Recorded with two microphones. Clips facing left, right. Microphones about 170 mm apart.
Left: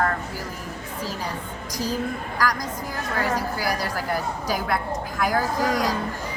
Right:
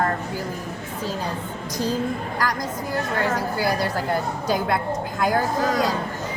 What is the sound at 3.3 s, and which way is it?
A woman's voice, 25° right (ahead or behind).